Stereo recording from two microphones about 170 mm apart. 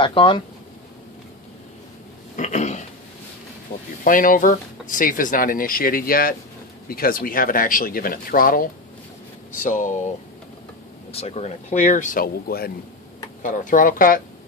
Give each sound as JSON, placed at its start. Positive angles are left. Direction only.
{"t": 0.0, "sound": "speech", "side_deg": 30}
{"t": 2.3, "sound": "a sound", "side_deg": 45}
{"t": 4.0, "sound": "speech", "side_deg": 50}
{"t": 13.4, "sound": "speech", "side_deg": 50}